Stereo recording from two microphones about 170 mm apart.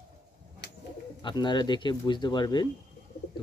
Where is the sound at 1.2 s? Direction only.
25° left (ahead or behind).